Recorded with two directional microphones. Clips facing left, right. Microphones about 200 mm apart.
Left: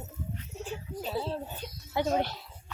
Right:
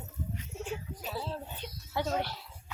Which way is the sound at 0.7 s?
25° left (ahead or behind).